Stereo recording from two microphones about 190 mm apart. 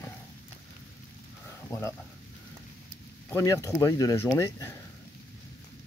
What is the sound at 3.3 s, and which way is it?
Speech, 15° left (ahead or behind).